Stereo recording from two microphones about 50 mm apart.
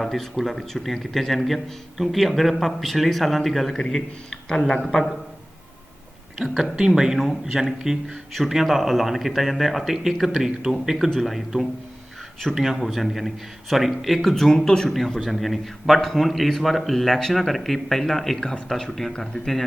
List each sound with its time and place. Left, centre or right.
0.0 s a man's voice: centre
4.4 s speech: centre
4.8 s a man's voice: centre
6.6 s a man's voice: centre
10.9 s a man's voice: centre
18.7 s a man's voice: centre